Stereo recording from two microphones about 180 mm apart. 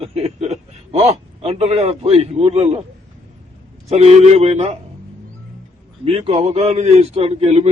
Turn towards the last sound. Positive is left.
turn(degrees=-35)  # may be behind; listen again after turning